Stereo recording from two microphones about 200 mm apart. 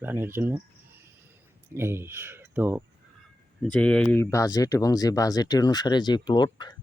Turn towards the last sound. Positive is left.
turn(degrees=20)  # may be behind; listen again after turning